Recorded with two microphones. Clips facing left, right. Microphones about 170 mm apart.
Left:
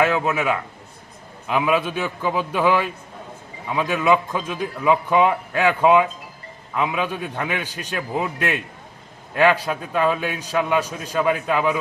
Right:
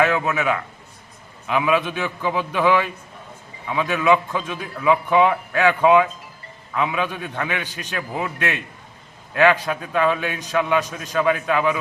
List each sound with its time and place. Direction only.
0.0 s a man's voice: 10° left (ahead or behind)